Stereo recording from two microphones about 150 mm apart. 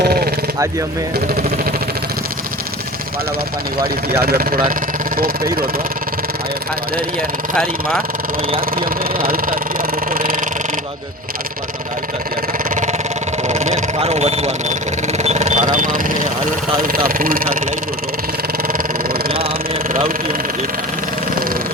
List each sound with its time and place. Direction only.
0.0 s a sound: 90° right
4.1 s speech: 90° right
4.7 s vehicle: 75° right (ahead or behind)
7.5 s speech: 5° left (ahead or behind)
8.7 s vehicle: 75° right (ahead or behind)
10.1 s a sound: 65° right (ahead or behind)
12.7 s a sound: 55° right (ahead or behind)
13.5 s vehicle: 45° right (ahead or behind); by 16.3 s 65° right (ahead or behind)
16.8 s speech: 75° right (ahead or behind)